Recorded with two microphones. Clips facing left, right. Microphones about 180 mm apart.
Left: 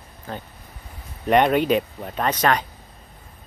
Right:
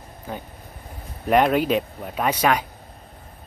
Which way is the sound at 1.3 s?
Centre (ahead or behind).